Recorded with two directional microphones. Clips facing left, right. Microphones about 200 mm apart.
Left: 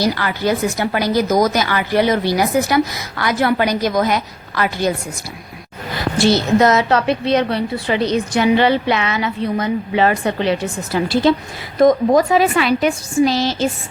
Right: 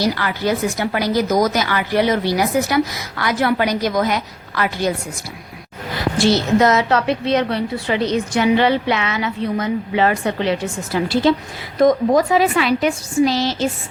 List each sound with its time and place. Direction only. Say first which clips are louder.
0.0 s a woman's voice: left 1 dB; 40° left (ahead or behind)
11.1 s a woman's voice: left 1 dB; 55° left (ahead or behind)